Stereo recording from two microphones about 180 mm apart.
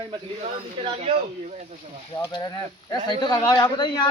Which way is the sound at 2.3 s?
25° left (ahead or behind).